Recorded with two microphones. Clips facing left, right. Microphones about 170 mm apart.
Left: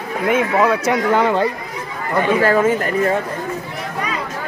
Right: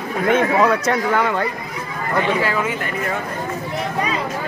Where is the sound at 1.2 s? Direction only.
30° left (ahead or behind).